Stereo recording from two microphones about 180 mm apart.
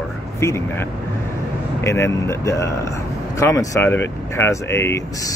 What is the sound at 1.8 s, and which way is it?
Speech, 15° left (ahead or behind).